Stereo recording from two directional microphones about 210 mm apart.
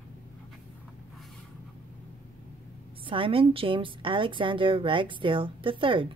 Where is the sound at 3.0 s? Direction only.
25° right (ahead or behind).